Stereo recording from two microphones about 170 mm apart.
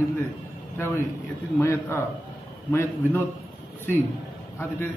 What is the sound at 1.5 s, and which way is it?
A man's voice, 15° left (ahead or behind).